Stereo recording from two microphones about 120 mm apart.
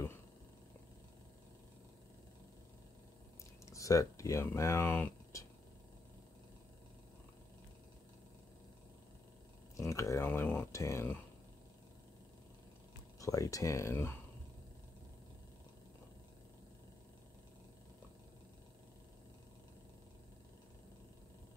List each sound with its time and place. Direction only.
3.6 s speech: 25° left (ahead or behind)
9.8 s speech: 25° left (ahead or behind)
13.2 s speech: 30° left (ahead or behind)